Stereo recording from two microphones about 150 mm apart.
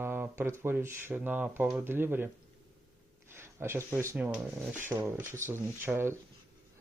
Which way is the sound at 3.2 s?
15° right (ahead or behind).